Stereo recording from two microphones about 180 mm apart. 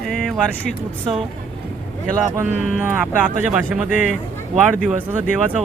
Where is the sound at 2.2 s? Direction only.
15° right (ahead or behind).